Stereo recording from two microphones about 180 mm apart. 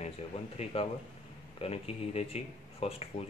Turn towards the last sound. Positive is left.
turn(degrees=35)  # may be behind; listen again after turning